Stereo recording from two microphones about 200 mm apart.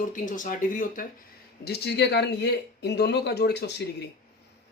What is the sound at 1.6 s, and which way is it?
Speech, 55° left (ahead or behind).